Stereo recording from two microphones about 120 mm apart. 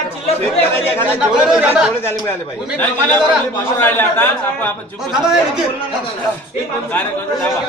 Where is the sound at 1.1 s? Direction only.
5° right (ahead or behind).